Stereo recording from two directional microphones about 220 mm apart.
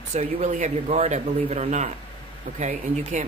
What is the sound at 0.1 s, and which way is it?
Speech, 30° right (ahead or behind).